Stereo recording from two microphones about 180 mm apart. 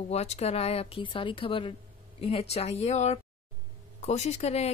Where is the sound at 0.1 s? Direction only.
35° left (ahead or behind).